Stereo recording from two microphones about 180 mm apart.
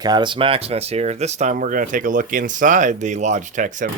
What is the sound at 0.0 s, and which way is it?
Speech, 25° right (ahead or behind).